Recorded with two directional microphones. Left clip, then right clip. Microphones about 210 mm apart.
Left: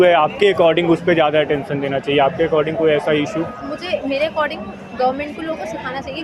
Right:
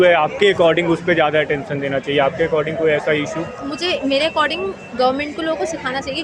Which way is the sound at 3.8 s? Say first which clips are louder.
Right 2 dB; 50° right (ahead or behind).